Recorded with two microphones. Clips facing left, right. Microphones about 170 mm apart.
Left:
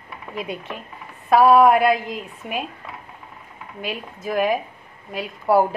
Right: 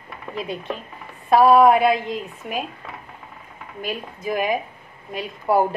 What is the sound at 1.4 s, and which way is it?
A woman's voice, centre (ahead or behind).